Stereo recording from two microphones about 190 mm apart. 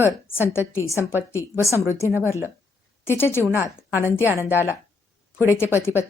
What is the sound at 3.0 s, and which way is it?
A woman's voice, 10° left (ahead or behind).